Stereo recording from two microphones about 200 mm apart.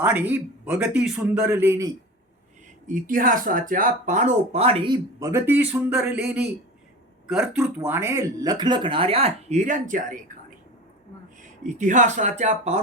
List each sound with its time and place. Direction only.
0.0 s a man's voice: 10° right (ahead or behind)
2.8 s speech: 45° right (ahead or behind); by 5.3 s 25° right (ahead or behind)
5.3 s a man's voice: 10° right (ahead or behind); by 10.2 s 40° right (ahead or behind)
11.6 s speech: 40° right (ahead or behind)